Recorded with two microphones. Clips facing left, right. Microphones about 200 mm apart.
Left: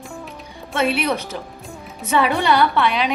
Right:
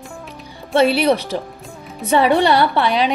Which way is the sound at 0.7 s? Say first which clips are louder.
Right 6 dB; 35° right (ahead or behind).